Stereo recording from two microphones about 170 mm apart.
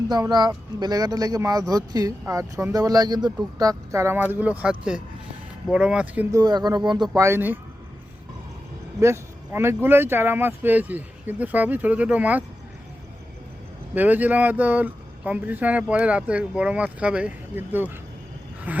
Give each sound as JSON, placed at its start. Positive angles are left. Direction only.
{"t": 0.1, "sound": "speech", "side_deg": -25}
{"t": 6.3, "sound": "speech", "side_deg": -25}
{"t": 7.2, "sound": "speech", "side_deg": -15}
{"t": 9.0, "sound": "speech", "side_deg": -15}
{"t": 13.9, "sound": "speech", "side_deg": -10}